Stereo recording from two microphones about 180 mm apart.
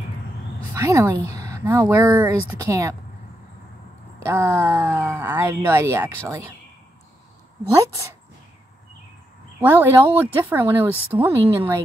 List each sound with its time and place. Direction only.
0.7 s a woman's voice: 15° right (ahead or behind)
4.2 s a woman's voice: 15° right (ahead or behind)
9.6 s a woman's voice: 10° right (ahead or behind)